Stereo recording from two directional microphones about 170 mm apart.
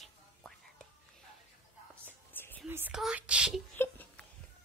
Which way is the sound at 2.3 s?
10° left (ahead or behind).